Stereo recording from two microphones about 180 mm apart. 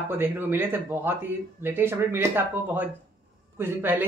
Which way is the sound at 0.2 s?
10° right (ahead or behind).